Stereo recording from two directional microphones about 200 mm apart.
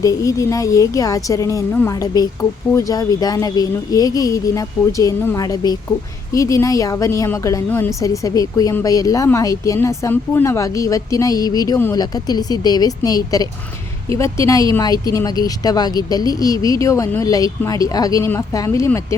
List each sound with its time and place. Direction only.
0.0 s a woman's voice: 15° left (ahead or behind)